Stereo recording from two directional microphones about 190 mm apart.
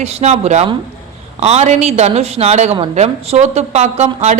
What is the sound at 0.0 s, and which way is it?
Speech, 35° right (ahead or behind).